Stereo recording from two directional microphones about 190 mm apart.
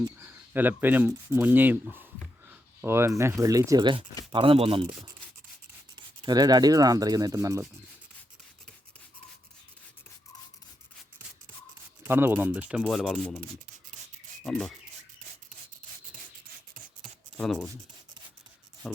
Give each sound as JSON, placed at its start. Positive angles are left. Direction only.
{"t": 0.2, "sound": "speech", "side_deg": -10}
{"t": 6.2, "sound": "speech", "side_deg": -20}
{"t": 12.0, "sound": "speech", "side_deg": -10}
{"t": 17.3, "sound": "speech", "side_deg": 0}